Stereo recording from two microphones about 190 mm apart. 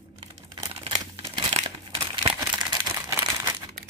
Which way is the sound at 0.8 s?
25° right (ahead or behind).